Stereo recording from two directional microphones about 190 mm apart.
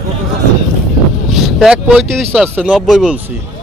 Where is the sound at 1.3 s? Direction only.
Centre (ahead or behind).